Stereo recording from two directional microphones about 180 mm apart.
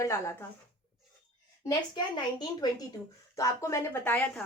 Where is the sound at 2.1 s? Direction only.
25° left (ahead or behind).